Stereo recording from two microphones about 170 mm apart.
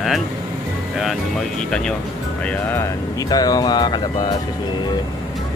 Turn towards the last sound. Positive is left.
turn(degrees=25)  # may be behind; listen again after turning